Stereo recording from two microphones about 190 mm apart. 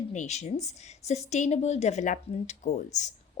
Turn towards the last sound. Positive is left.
turn(degrees=35)  # may be behind; listen again after turning